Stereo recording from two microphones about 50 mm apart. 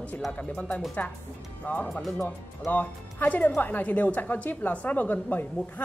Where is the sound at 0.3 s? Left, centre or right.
Left.